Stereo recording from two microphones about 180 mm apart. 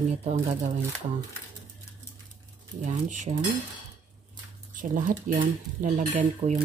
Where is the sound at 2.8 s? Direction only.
45° right (ahead or behind).